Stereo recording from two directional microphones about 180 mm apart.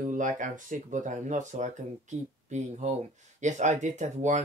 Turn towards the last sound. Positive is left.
turn(degrees=-40)  # may be behind; listen again after turning